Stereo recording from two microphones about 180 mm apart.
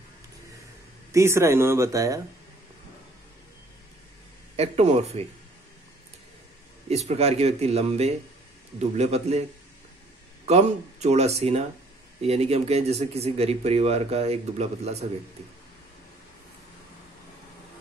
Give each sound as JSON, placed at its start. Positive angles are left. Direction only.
{"t": 1.1, "sound": "speech", "side_deg": -15}
{"t": 4.6, "sound": "speech", "side_deg": -35}
{"t": 6.9, "sound": "speech", "side_deg": -35}
{"t": 10.4, "sound": "speech", "side_deg": -35}